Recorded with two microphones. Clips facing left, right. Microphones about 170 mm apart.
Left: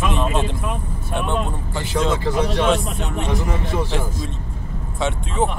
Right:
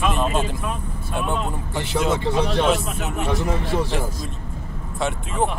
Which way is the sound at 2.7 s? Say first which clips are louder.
Left 2 dB; 5° right (ahead or behind).